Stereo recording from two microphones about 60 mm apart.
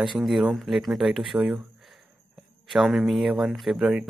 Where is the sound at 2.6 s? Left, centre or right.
Centre.